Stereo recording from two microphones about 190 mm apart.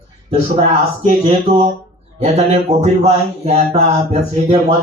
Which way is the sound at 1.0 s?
35° right (ahead or behind).